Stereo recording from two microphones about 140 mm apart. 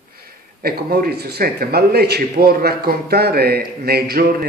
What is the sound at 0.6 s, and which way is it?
Speech, 90° right.